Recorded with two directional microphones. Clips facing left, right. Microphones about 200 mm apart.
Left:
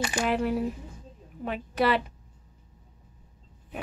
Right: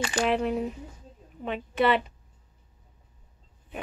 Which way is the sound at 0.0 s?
10° left (ahead or behind).